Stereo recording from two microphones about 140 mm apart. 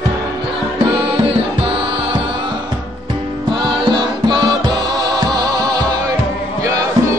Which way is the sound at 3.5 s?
35° right (ahead or behind).